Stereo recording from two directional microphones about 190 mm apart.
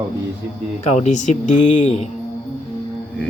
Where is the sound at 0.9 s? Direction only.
40° left (ahead or behind).